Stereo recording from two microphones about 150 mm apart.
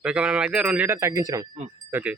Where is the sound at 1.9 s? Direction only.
10° right (ahead or behind).